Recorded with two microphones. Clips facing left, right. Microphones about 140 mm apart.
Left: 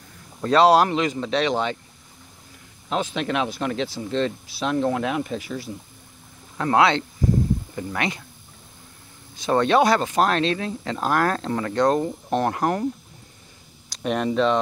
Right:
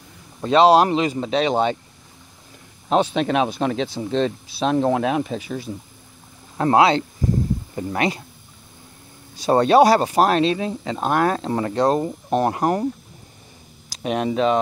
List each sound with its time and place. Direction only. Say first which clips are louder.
0.4 s speech: right 2 dB; 20° right (ahead or behind)
3.2 s speech: right 5 dB; 20° right (ahead or behind)
6.6 s speech: right 3 dB; 30° right (ahead or behind)
9.4 s speech: right 4 dB; 35° right (ahead or behind)
10.1 s speech: right 3 dB; 10° right (ahead or behind)
11.5 s speech: left 1 dB; 30° right (ahead or behind)
12.0 s speech: right 2 dB; 15° right (ahead or behind)
13.8 s speech: right 1 dB; 5° right (ahead or behind)